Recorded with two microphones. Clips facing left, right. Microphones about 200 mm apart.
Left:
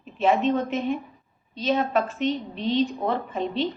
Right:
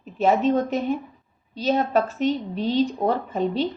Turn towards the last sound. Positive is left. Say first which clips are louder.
# right 3 dB
turn(degrees=-40)  # may be behind; listen again after turning